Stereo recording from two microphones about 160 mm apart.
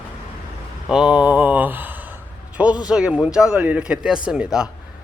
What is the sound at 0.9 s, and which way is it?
Speech, 5° right (ahead or behind).